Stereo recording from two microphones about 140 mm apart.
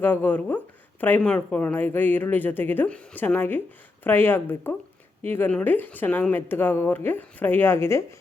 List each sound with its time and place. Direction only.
0.0 s speech: 15° left (ahead or behind)